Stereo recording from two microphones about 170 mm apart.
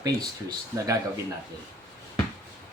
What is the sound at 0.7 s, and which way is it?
Speech, 15° right (ahead or behind).